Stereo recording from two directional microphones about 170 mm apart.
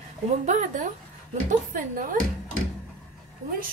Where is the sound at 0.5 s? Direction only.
45° right (ahead or behind).